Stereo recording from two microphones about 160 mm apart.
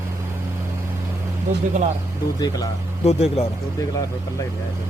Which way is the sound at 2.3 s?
25° left (ahead or behind).